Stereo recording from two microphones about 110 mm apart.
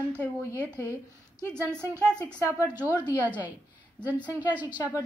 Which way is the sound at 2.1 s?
10° left (ahead or behind).